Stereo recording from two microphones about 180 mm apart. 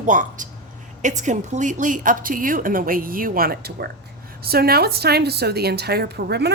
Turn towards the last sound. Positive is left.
turn(degrees=-65)  # may be behind; listen again after turning